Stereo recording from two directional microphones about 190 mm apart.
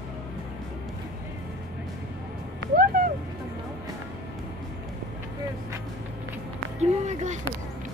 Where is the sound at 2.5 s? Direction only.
50° right (ahead or behind).